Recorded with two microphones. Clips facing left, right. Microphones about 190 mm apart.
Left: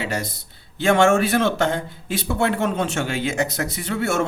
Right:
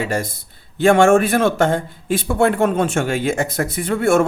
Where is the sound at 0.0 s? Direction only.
50° right (ahead or behind).